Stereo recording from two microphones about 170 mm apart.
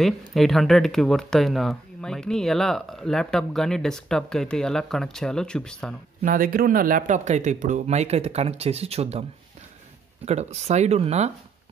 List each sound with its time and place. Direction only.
0.3 s speech: centre (ahead or behind)
6.2 s speech: 55° right (ahead or behind); by 9.2 s 40° right (ahead or behind)
10.2 s speech: 40° right (ahead or behind)